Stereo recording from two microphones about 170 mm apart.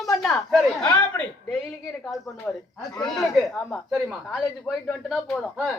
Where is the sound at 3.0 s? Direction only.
Centre (ahead or behind).